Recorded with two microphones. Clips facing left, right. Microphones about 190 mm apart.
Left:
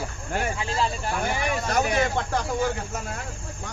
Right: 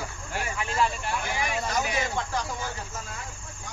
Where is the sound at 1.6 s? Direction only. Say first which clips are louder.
Left 5 dB; 55° left (ahead or behind).